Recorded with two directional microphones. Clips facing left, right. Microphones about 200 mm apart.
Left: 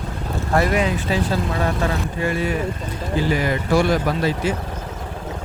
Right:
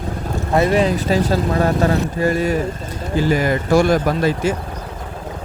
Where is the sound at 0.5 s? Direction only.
25° right (ahead or behind); by 4.5 s 45° right (ahead or behind).